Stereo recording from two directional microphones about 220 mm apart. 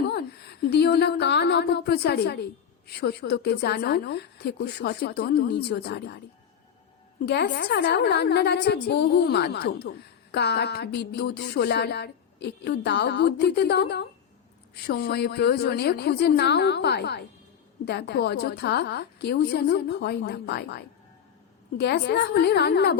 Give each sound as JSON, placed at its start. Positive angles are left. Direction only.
{"t": 0.6, "sound": "speech", "side_deg": 45}
{"t": 7.3, "sound": "speech", "side_deg": 50}